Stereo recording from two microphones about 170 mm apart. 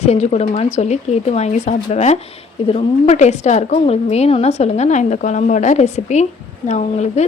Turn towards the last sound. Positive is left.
turn(degrees=40)  # may be behind; listen again after turning